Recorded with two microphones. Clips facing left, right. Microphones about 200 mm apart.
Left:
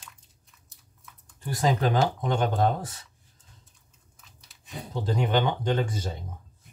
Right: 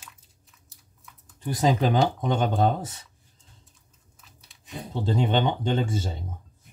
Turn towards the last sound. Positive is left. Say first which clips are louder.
# right 1 dB
turn(degrees=-25)  # may be behind; listen again after turning